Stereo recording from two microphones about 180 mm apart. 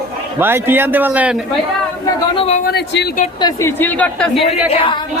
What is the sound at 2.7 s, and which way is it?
Speech, 65° left (ahead or behind).